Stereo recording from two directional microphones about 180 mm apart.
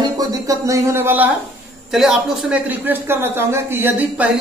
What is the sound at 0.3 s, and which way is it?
A man's voice, 20° right (ahead or behind).